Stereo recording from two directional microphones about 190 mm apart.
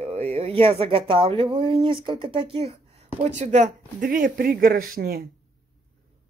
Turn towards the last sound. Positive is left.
turn(degrees=-55)  # may be behind; listen again after turning